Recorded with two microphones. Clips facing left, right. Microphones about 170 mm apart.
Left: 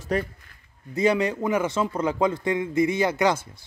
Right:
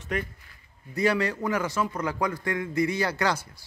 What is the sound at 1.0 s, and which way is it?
Speech, 20° left (ahead or behind).